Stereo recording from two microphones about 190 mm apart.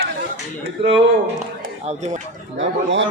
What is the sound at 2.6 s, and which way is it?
Speech, 70° right (ahead or behind).